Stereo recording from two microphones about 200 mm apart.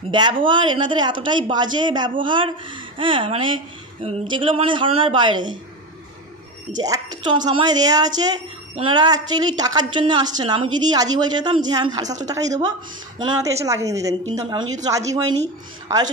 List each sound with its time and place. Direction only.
0.1 s a woman's voice: 25° right (ahead or behind)
6.8 s a woman's voice: 20° right (ahead or behind)
13.2 s a woman's voice: 15° right (ahead or behind)